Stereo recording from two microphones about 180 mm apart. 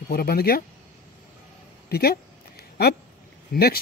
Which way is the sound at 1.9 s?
60° left (ahead or behind).